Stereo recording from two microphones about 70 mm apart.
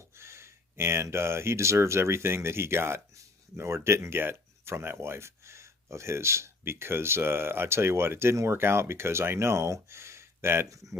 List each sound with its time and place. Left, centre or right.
0.2 s speech: right